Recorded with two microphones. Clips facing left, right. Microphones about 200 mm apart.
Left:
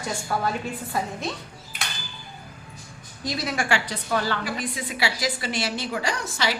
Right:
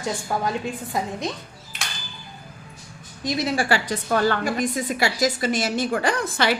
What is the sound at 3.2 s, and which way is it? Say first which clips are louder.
Speech: right 4 dB; 25° right (ahead or behind).